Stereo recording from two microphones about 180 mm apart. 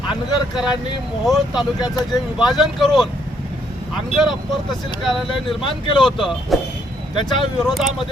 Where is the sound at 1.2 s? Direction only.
Centre (ahead or behind).